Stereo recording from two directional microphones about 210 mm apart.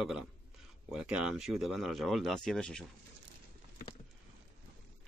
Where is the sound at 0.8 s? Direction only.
5° right (ahead or behind).